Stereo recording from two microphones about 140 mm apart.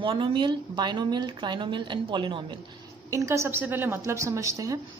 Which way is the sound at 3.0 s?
20° right (ahead or behind).